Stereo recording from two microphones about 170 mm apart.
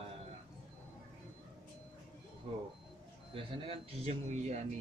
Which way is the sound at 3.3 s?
35° right (ahead or behind).